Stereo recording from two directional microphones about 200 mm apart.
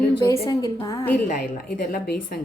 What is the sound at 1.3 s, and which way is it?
Speech, 50° left (ahead or behind).